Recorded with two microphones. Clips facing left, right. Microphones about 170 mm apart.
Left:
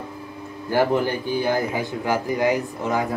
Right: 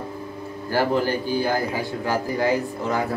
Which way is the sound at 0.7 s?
20° left (ahead or behind).